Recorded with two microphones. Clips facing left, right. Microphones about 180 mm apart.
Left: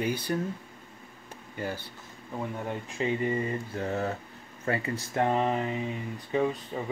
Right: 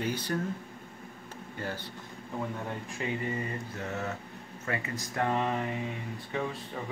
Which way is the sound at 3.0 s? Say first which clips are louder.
Left 6 dB; 25° left (ahead or behind).